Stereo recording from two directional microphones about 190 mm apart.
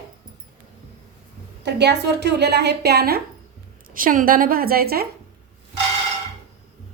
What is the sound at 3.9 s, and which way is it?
A woman's voice, 45° right (ahead or behind).